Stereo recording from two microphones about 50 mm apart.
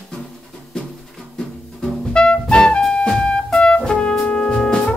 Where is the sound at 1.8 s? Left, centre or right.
Centre.